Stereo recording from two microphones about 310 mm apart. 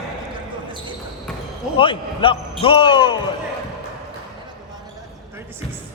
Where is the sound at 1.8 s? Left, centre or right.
Centre.